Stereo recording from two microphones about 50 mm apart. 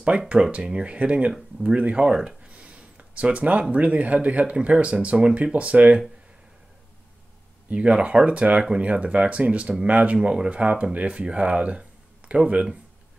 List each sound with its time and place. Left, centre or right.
0.3 s speech: right
7.7 s speech: right